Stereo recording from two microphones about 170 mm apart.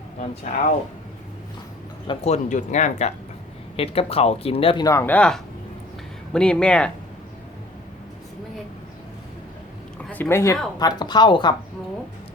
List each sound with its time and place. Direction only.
0.2 s speech: 50° left (ahead or behind)
2.0 s speech: 40° left (ahead or behind)
4.9 s speech: 15° left (ahead or behind)
10.0 s speech: 10° left (ahead or behind); by 11.5 s 25° left (ahead or behind)